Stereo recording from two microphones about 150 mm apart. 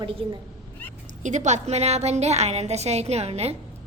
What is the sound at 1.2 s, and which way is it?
A woman's voice, 55° right (ahead or behind).